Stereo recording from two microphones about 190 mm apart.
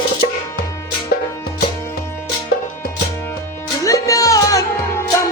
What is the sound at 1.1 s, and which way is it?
Music, 50° left (ahead or behind).